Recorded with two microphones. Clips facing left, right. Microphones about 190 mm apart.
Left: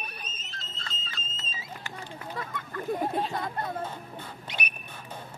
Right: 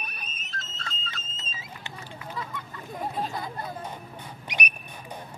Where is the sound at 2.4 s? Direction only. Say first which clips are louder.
Left 2 dB; 55° left (ahead or behind).